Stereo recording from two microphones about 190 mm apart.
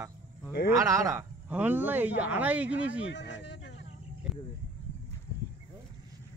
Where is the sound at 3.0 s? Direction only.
65° left (ahead or behind).